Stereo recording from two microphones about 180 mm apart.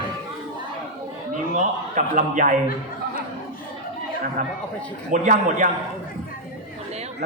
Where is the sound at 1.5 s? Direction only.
45° right (ahead or behind).